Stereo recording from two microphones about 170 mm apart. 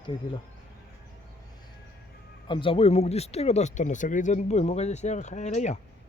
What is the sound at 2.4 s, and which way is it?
Speech, 30° left (ahead or behind).